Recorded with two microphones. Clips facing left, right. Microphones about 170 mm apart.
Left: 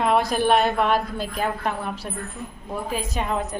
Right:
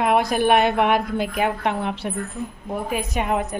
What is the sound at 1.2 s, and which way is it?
Speech, 65° right (ahead or behind).